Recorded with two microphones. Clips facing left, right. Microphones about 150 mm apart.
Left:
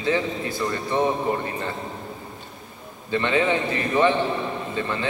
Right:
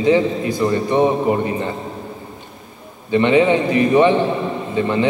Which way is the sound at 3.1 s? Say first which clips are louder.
Right 8 dB; 15° right (ahead or behind).